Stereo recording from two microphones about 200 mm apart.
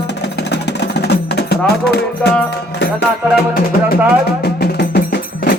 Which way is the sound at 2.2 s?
5° left (ahead or behind).